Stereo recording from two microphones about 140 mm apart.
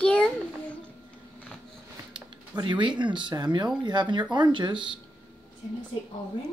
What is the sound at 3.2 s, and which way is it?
Speech, 30° right (ahead or behind).